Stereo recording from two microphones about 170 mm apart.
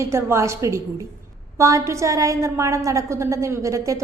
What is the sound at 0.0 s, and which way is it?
A woman's voice, 15° right (ahead or behind).